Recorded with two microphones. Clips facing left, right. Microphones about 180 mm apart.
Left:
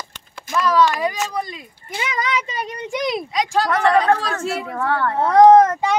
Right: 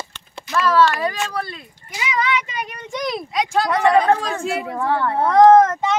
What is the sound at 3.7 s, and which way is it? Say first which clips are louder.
Speech: right 1 dB; 15° right (ahead or behind).